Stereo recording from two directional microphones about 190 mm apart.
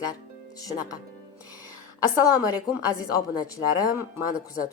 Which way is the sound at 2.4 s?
20° left (ahead or behind).